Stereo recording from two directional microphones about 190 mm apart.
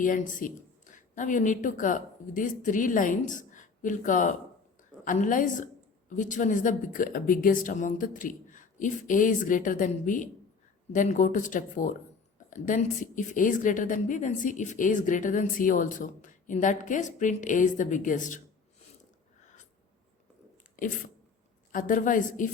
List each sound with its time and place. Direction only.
0.0 s a woman's voice: 45° left (ahead or behind)
21.7 s a woman's voice: 45° left (ahead or behind)